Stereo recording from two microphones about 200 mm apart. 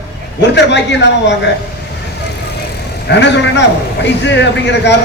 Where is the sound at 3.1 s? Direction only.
60° left (ahead or behind).